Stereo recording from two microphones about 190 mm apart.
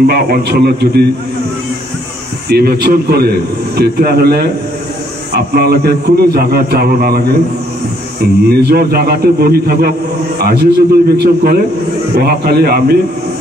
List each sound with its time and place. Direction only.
0.0 s a man's voice: 55° right (ahead or behind)
2.5 s a man's voice: 55° right (ahead or behind)
8.6 s a man's voice: 55° right (ahead or behind)